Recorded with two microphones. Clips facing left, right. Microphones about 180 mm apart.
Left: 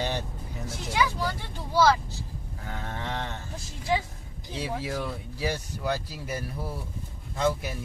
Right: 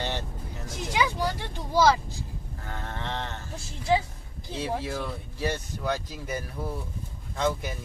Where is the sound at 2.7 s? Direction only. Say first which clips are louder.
Even; 15° left (ahead or behind).